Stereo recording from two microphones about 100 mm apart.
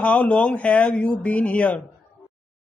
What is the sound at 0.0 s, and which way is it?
Speech, 15° left (ahead or behind).